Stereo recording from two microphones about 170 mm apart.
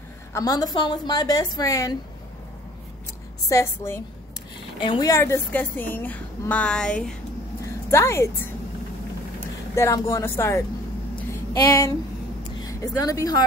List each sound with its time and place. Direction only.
0.3 s a woman's voice: 20° left (ahead or behind)
3.4 s a woman's voice: 15° left (ahead or behind)
4.7 s a woman's voice: 30° left (ahead or behind)
5.1 s a woman's voice: 15° left (ahead or behind)
7.6 s a sound: 15° left (ahead or behind)
9.4 s a woman's voice: 15° left (ahead or behind)